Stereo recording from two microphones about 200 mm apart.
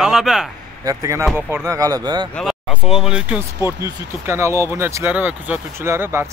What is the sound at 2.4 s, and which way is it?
Speech, centre (ahead or behind).